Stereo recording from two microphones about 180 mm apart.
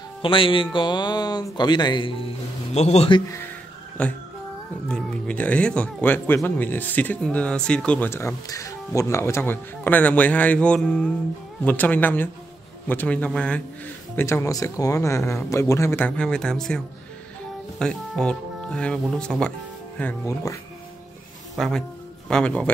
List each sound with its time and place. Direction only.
0.2 s speech: 30° left (ahead or behind)
4.0 s speech: 5° left (ahead or behind)
21.5 s speech: centre (ahead or behind)